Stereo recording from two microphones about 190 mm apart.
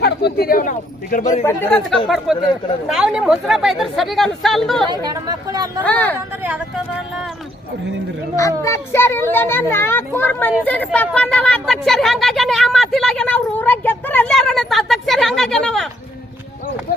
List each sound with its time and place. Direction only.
0.0 s speech: 60° left (ahead or behind); by 1.5 s 40° left (ahead or behind)
1.5 s a child's voice: 10° left (ahead or behind)
4.9 s speech: 20° right (ahead or behind)
5.8 s a child's voice: 10° left (ahead or behind)
6.1 s speech: 10° right (ahead or behind)
8.4 s a child's voice: 15° left (ahead or behind)